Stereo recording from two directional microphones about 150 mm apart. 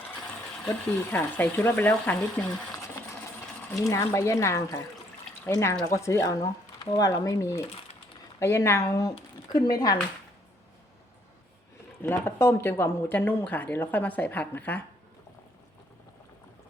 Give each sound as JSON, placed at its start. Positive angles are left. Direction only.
{"t": 0.6, "sound": "speech", "side_deg": 10}
{"t": 5.8, "sound": "speech", "side_deg": 20}
{"t": 12.0, "sound": "speech", "side_deg": 15}